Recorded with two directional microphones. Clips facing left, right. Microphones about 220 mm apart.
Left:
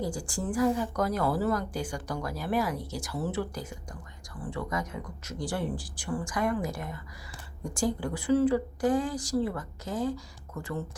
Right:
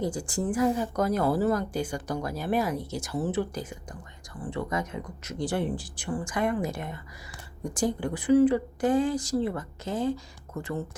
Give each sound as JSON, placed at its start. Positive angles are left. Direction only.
{"t": 0.0, "sound": "speech", "side_deg": -20}